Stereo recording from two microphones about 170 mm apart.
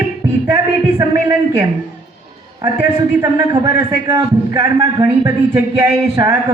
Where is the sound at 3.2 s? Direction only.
20° right (ahead or behind).